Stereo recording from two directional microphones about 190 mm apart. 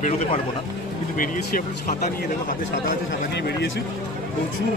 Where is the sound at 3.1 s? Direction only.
65° left (ahead or behind).